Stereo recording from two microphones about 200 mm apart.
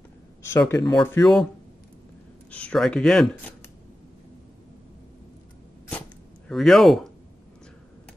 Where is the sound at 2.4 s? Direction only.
5° left (ahead or behind).